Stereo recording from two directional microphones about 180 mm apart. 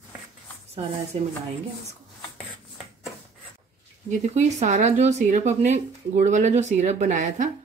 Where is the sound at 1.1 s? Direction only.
30° right (ahead or behind).